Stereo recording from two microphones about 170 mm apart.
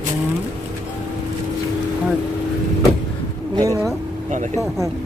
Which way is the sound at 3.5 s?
20° right (ahead or behind).